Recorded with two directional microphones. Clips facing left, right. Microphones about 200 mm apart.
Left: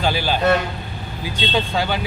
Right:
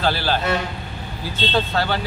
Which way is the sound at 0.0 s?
15° left (ahead or behind).